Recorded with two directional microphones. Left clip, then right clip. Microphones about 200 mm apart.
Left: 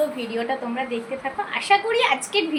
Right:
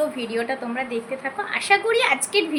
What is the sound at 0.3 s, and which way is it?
A woman's voice, 15° right (ahead or behind).